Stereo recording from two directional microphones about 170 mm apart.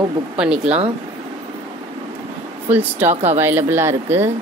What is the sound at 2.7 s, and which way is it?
Speech, 10° right (ahead or behind).